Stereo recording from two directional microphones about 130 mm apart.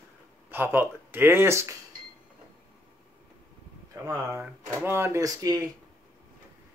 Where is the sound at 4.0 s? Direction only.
20° right (ahead or behind).